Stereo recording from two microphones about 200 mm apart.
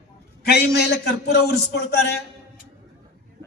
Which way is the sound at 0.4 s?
55° left (ahead or behind).